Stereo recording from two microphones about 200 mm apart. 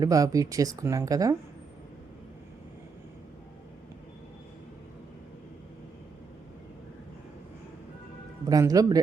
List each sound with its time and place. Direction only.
0.0 s speech: 15° right (ahead or behind)
8.4 s speech: 15° right (ahead or behind)